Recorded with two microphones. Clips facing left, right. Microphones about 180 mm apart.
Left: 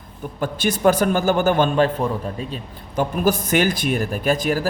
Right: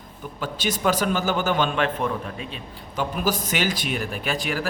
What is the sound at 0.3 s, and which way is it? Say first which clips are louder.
A man's voice: left 5 dB; 50° left (ahead or behind).